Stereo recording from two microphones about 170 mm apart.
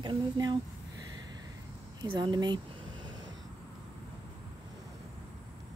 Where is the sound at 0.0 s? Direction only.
25° right (ahead or behind).